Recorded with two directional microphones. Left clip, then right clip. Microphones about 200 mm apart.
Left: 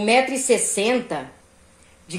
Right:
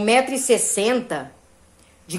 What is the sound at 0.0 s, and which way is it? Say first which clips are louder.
A woman's voice: even; centre (ahead or behind).